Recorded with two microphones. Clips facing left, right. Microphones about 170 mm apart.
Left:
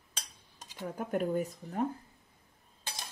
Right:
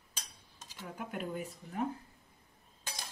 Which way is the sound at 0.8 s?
40° left (ahead or behind).